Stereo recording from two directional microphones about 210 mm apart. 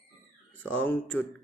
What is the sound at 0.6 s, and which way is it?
Speech, 10° left (ahead or behind).